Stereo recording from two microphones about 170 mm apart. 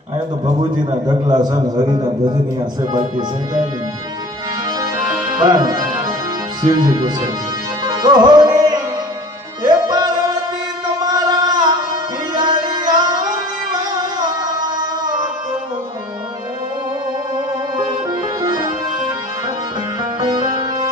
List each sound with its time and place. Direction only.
1.0 s a man's voice: 25° right (ahead or behind)
4.8 s tabla: 20° right (ahead or behind)
6.6 s a man's voice: 25° right (ahead or behind)
7.9 s music: 25° right (ahead or behind)
12.3 s tabla: 25° right (ahead or behind)
18.1 s accordion: 25° right (ahead or behind)
20.1 s music: 25° right (ahead or behind)